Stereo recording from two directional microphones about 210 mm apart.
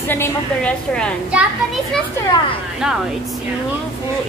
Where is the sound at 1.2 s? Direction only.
Centre (ahead or behind).